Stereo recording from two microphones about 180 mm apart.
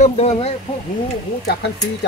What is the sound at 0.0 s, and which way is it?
Speech, 35° left (ahead or behind).